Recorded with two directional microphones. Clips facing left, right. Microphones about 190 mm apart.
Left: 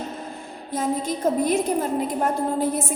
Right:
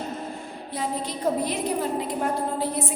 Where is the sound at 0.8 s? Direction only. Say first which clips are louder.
Left 5 dB; 45° left (ahead or behind).